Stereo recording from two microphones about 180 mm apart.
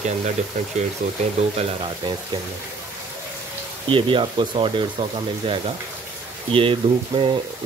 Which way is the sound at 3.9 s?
25° right (ahead or behind).